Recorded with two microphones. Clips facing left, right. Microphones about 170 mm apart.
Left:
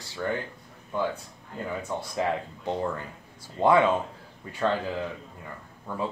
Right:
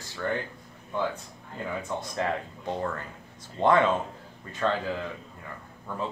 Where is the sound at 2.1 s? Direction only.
15° left (ahead or behind).